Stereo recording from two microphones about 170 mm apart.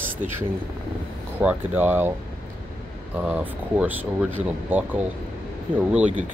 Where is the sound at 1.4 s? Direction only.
10° right (ahead or behind).